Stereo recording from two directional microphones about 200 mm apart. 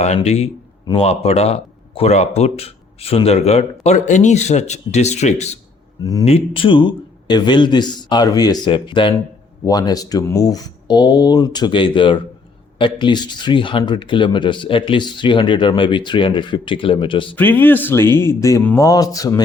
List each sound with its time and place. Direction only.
0.0 s speech: 35° left (ahead or behind)
6.0 s speech: 20° left (ahead or behind)
6.2 s speech: 30° left (ahead or behind)
17.3 s speech: 10° left (ahead or behind)